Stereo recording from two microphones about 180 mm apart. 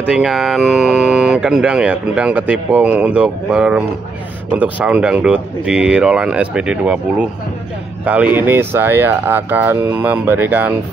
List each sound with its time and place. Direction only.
0.1 s speech: centre (ahead or behind)